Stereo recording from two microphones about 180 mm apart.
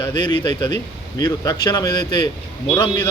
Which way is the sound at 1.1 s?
20° left (ahead or behind).